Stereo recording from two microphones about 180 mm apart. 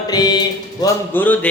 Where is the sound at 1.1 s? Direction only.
10° left (ahead or behind).